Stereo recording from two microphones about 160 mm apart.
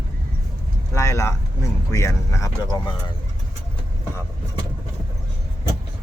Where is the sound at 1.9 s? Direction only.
20° left (ahead or behind).